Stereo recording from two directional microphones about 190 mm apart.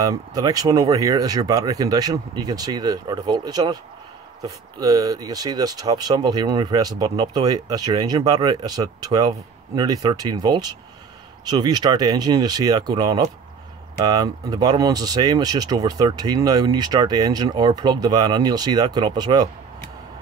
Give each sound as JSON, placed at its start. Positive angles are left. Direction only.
{"t": 0.0, "sound": "speech", "side_deg": -20}